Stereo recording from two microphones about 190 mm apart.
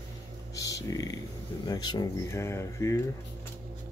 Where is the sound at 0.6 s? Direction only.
15° left (ahead or behind).